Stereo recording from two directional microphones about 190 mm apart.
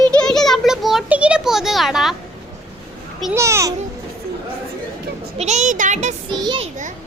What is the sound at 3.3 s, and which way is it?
Speech, 15° right (ahead or behind).